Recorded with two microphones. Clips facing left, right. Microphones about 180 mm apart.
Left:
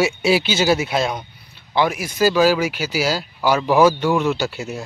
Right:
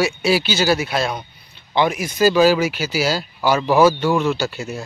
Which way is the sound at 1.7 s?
5° left (ahead or behind).